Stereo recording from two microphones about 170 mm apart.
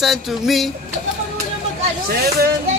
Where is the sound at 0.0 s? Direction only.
Centre (ahead or behind).